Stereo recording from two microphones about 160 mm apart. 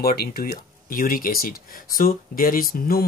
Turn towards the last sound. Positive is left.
turn(degrees=65)  # may be behind; listen again after turning